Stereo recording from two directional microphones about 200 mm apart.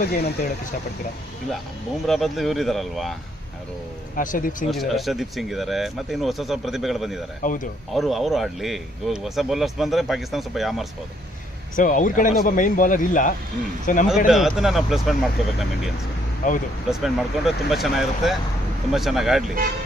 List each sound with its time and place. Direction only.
0.0 s speech: 50° left (ahead or behind)
2.0 s speech: centre (ahead or behind)
4.1 s a man's voice: 45° left (ahead or behind)
4.6 s speech: centre (ahead or behind)
7.4 s speech: 45° left (ahead or behind)
7.9 s speech: centre (ahead or behind)
11.7 s a man's voice: 40° left (ahead or behind)
14.0 s speech: centre (ahead or behind)
16.4 s a man's voice: 40° left (ahead or behind)
16.9 s speech: centre (ahead or behind)